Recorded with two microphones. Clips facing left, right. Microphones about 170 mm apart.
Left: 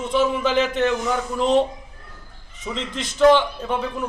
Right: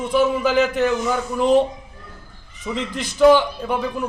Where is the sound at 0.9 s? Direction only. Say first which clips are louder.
Right 1 dB; 5° right (ahead or behind).